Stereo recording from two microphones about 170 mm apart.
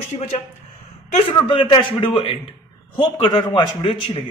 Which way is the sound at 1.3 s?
30° left (ahead or behind).